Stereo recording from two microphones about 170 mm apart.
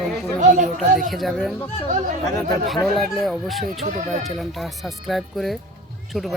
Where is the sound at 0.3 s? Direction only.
50° right (ahead or behind).